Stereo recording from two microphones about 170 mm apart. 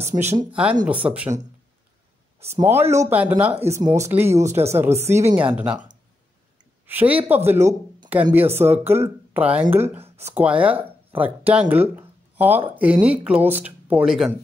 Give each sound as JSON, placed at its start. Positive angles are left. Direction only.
{"t": 0.0, "sound": "speech", "side_deg": -15}
{"t": 2.6, "sound": "speech", "side_deg": -15}
{"t": 6.9, "sound": "speech", "side_deg": -10}
{"t": 9.9, "sound": "speech", "side_deg": -35}
{"t": 10.3, "sound": "speech", "side_deg": -10}